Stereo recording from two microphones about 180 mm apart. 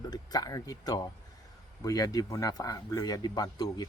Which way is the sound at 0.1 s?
20° left (ahead or behind).